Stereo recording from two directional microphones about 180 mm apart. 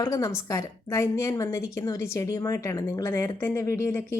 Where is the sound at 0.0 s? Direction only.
20° left (ahead or behind).